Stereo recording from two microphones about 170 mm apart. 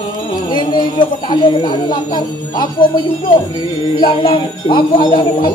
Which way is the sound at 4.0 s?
30° left (ahead or behind).